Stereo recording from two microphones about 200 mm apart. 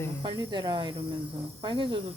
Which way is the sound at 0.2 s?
25° right (ahead or behind).